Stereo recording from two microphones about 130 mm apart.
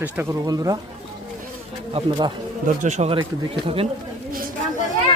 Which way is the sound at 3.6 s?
45° right (ahead or behind).